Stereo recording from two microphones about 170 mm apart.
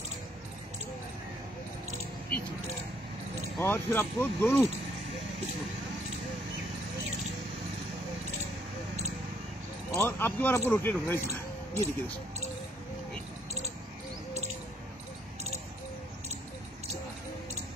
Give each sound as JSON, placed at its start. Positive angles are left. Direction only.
{"t": 3.5, "sound": "speech", "side_deg": 15}
{"t": 9.9, "sound": "speech", "side_deg": 10}